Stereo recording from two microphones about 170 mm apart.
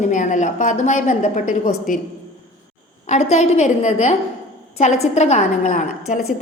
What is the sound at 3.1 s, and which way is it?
A woman's voice, 40° left (ahead or behind).